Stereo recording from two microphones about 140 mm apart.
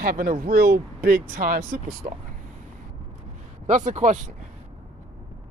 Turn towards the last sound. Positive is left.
turn(degrees=-60)  # may be behind; listen again after turning